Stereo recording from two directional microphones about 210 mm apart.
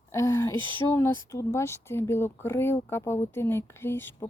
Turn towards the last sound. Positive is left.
turn(degrees=10)  # may be behind; listen again after turning